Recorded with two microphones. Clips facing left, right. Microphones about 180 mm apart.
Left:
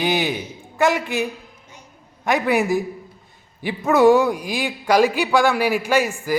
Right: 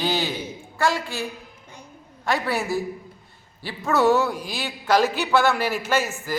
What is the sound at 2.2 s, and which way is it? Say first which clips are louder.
A man's voice: left 6 dB; 15° left (ahead or behind).